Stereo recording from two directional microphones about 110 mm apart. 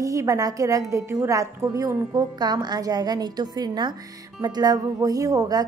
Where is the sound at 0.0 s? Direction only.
30° right (ahead or behind).